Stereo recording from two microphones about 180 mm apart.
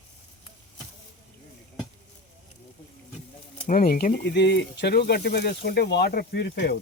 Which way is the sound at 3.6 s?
50° left (ahead or behind).